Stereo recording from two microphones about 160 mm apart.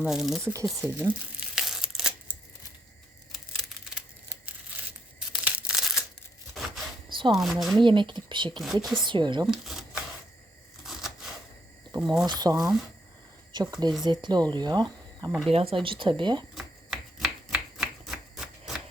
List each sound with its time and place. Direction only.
0.0 s speech: centre (ahead or behind)
0.8 s crumpling: 15° right (ahead or behind)
3.3 s a sound: centre (ahead or behind)
5.3 s a sound: 5° right (ahead or behind)
7.3 s speech: centre (ahead or behind)
7.8 s speech: 30° right (ahead or behind)
8.6 s speech: centre (ahead or behind)
9.0 s speech: 30° right (ahead or behind)
9.5 s camera: 5° right (ahead or behind)
10.8 s typewriter: centre (ahead or behind)
11.9 s speech: 5° right (ahead or behind)
12.2 s speech: 25° right (ahead or behind)
16.6 s a sound: centre (ahead or behind)